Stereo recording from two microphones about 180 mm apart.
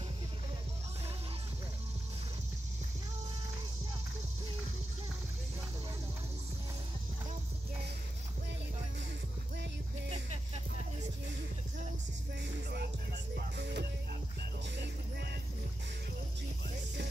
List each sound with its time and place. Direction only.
10.0 s music: 35° right (ahead or behind)
13.4 s music: 65° right (ahead or behind)